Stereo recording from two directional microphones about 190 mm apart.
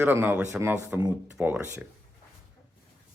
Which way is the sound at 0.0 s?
10° right (ahead or behind).